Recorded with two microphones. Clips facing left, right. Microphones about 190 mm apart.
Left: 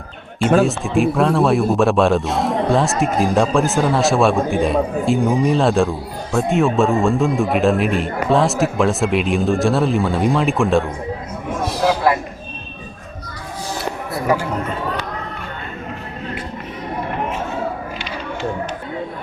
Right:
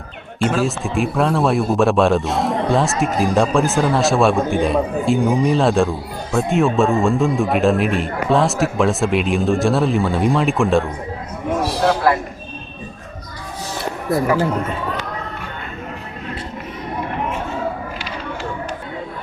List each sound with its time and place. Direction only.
0.6 s a man's voice: centre (ahead or behind)